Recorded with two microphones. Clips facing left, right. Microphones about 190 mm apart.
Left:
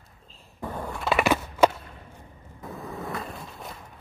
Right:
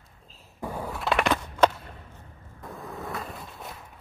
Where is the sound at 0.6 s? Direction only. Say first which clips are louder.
Even; 10° right (ahead or behind).